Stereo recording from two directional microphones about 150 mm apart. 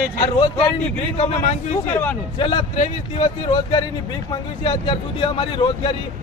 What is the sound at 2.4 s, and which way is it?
Speech, 35° left (ahead or behind).